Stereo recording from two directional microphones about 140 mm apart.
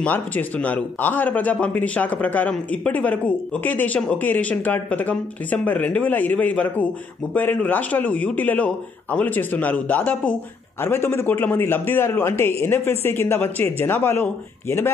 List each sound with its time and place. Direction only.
0.0 s speech: 10° left (ahead or behind)